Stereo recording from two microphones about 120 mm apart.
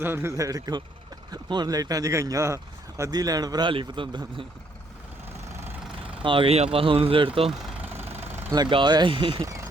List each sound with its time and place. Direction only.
0.0 s a man's voice: 20° right (ahead or behind); by 4.4 s 40° right (ahead or behind)
5.5 s vehicle: 20° right (ahead or behind)
6.2 s speech: 45° right (ahead or behind)
7.8 s vehicle: 15° right (ahead or behind)
8.5 s speech: 40° right (ahead or behind)
9.4 s speech: 25° right (ahead or behind)